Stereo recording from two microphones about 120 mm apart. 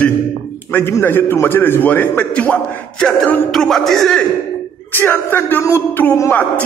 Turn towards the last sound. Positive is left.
turn(degrees=20)  # may be behind; listen again after turning